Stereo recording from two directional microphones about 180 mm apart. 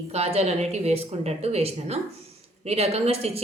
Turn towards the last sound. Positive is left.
turn(degrees=-35)  # may be behind; listen again after turning